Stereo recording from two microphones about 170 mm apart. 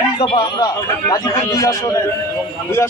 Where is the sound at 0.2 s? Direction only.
30° left (ahead or behind).